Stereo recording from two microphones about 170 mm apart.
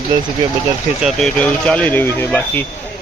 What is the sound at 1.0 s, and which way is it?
Speech, 5° left (ahead or behind).